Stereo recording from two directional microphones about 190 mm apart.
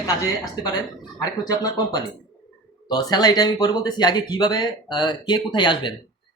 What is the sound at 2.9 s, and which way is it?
Speech, 20° left (ahead or behind).